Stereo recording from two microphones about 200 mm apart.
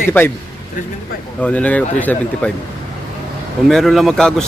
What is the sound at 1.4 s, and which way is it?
Speech, 5° left (ahead or behind).